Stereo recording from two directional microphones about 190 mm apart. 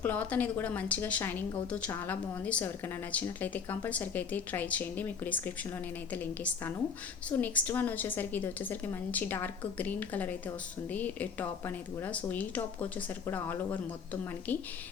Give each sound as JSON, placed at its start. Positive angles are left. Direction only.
{"t": 0.0, "sound": "speech", "side_deg": 10}